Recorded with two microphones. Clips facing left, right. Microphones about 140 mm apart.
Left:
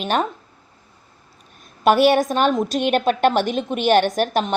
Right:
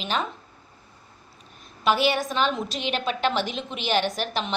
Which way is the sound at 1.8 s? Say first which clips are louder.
Left 8 dB; 55° left (ahead or behind).